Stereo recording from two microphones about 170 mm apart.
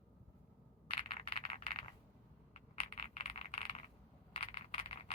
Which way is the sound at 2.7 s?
35° left (ahead or behind).